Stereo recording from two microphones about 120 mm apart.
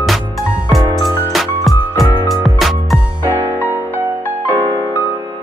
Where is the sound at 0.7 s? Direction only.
Centre (ahead or behind).